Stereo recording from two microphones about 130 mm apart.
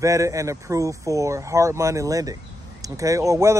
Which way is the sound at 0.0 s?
25° right (ahead or behind).